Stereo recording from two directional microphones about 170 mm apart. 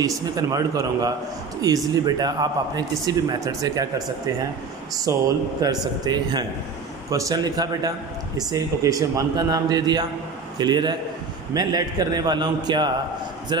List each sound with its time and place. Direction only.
0.0 s a man's voice: 20° right (ahead or behind)
5.1 s a man's voice: 20° right (ahead or behind)